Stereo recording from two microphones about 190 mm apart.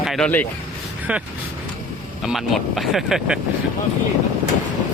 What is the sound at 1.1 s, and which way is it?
Speech, 5° right (ahead or behind).